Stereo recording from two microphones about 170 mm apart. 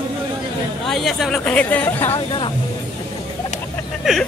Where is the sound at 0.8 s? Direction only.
Centre (ahead or behind).